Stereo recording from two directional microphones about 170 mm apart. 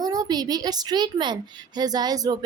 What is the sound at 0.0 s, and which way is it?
A woman's voice, 20° right (ahead or behind).